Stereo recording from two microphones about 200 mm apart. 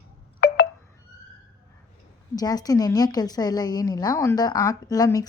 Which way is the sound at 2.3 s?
20° left (ahead or behind).